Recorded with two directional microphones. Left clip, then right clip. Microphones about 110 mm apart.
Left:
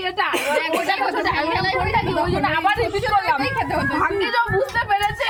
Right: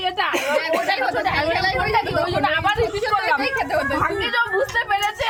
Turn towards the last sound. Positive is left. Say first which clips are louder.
# left 1 dB
turn(degrees=10)  # may be behind; listen again after turning